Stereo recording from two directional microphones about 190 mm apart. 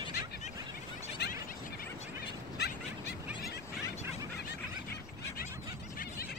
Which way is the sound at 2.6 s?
60° left (ahead or behind).